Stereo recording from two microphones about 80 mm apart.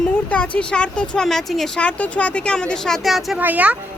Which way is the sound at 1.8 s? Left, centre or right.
Centre.